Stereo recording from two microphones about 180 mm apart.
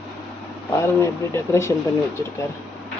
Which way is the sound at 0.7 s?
15° left (ahead or behind).